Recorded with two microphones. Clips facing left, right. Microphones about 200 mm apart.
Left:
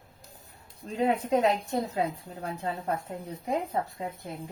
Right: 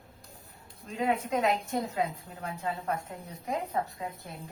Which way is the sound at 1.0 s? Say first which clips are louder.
Left 4 dB; 35° left (ahead or behind).